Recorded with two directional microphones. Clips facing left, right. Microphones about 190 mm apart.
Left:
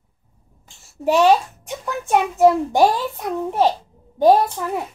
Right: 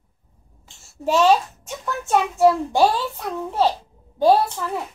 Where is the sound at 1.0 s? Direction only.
15° left (ahead or behind).